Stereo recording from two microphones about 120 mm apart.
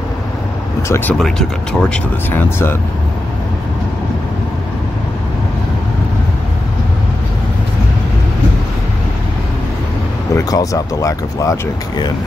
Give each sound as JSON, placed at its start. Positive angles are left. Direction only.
{"t": 0.8, "sound": "speech", "side_deg": 20}
{"t": 1.1, "sound": "speech", "side_deg": 5}
{"t": 2.3, "sound": "speech", "side_deg": 20}
{"t": 10.3, "sound": "speech", "side_deg": 30}